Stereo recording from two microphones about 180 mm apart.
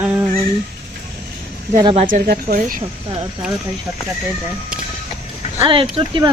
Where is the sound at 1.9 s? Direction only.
45° right (ahead or behind).